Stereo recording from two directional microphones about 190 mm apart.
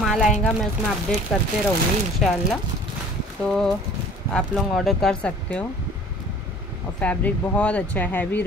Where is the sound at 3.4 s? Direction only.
Centre (ahead or behind).